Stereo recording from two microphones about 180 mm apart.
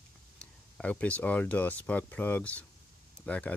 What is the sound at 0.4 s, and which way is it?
Speech, 5° left (ahead or behind).